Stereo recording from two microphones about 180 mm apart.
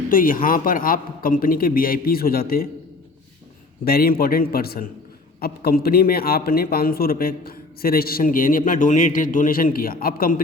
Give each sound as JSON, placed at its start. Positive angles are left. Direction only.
{"t": 0.1, "sound": "a man's voice", "side_deg": 50}
{"t": 3.8, "sound": "a man's voice", "side_deg": 55}